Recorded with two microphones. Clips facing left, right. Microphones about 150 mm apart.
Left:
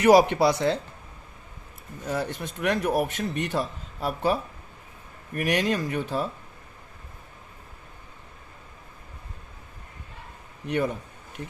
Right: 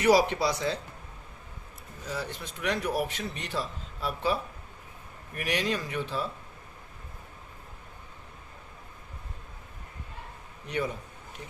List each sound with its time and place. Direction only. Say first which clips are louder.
0.0 s speech: left 5 dB; 55° left (ahead or behind)
2.0 s a man's voice: left 6 dB; 55° left (ahead or behind)
5.4 s a man's voice: left 5 dB; 50° left (ahead or behind)
10.7 s speech: left 5 dB; 55° left (ahead or behind)